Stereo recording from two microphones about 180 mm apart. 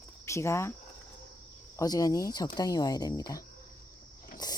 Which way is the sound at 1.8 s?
20° left (ahead or behind).